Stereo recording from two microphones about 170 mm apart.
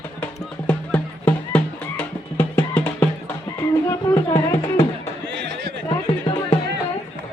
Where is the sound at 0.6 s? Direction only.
10° left (ahead or behind).